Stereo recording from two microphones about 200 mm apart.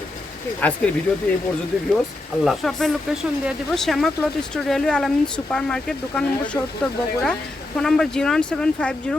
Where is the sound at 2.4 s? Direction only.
Centre (ahead or behind).